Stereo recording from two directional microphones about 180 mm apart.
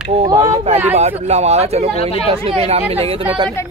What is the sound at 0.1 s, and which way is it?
Speech, 30° right (ahead or behind).